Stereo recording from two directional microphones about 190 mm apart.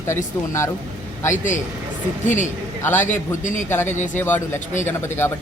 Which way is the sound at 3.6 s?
10° left (ahead or behind).